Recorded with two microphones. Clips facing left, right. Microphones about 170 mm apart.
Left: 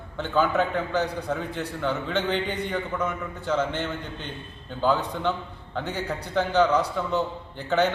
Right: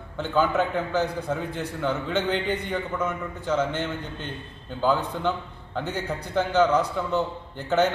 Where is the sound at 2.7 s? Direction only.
10° right (ahead or behind).